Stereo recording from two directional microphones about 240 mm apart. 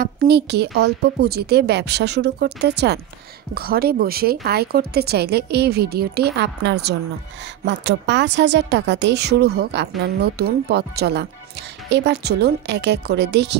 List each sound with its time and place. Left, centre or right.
0.0 s a woman's voice: right